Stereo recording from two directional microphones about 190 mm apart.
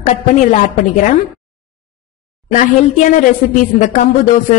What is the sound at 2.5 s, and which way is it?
Speech, 40° left (ahead or behind).